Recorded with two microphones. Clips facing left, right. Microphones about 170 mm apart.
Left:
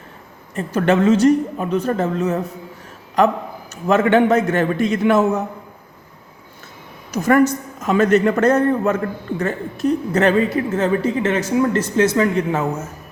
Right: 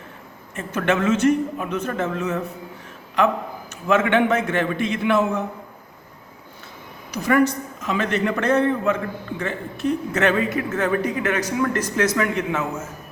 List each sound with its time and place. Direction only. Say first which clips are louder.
0.5 s a woman's voice: left 5 dB; 35° left (ahead or behind)
7.1 s a man's voice: left 4 dB; 45° left (ahead or behind)